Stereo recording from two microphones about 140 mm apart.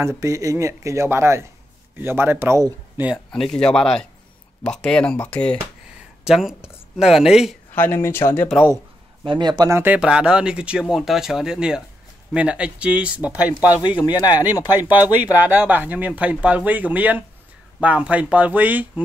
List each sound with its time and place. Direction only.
0.0 s speech: 20° right (ahead or behind)
3.3 s speech: 5° left (ahead or behind)
6.2 s speech: 5° right (ahead or behind)
7.7 s speech: 15° left (ahead or behind)
9.2 s speech: 35° right (ahead or behind)
9.8 s speech: 10° right (ahead or behind)
13.8 s speech: 30° left (ahead or behind)
14.2 s speech: 10° right (ahead or behind)